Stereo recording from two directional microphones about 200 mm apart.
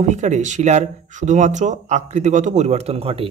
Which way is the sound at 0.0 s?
35° right (ahead or behind).